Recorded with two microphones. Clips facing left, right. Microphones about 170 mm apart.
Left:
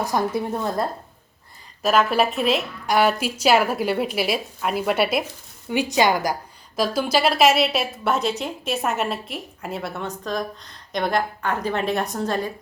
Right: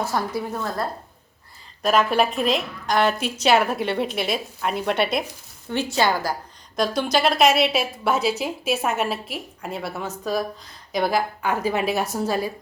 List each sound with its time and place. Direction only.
0.0 s a woman's voice: 20° left (ahead or behind)
1.8 s a woman's voice: centre (ahead or behind)
6.7 s a woman's voice: 5° left (ahead or behind)